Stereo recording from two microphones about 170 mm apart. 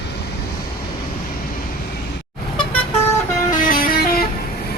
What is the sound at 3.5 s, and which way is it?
Vehicle, 55° left (ahead or behind).